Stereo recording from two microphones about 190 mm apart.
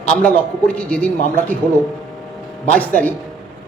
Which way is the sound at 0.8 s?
5° left (ahead or behind).